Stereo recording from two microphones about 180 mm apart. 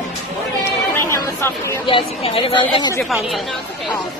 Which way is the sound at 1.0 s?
15° left (ahead or behind).